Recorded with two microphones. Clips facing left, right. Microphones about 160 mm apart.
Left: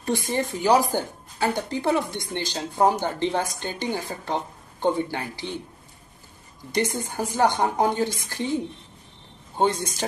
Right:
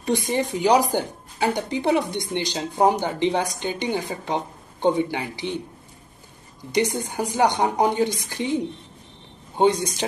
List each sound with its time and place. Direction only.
0.0 s speech: 15° right (ahead or behind)
6.7 s speech: 15° right (ahead or behind)